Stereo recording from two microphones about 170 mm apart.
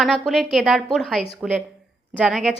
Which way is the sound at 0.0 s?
Centre (ahead or behind).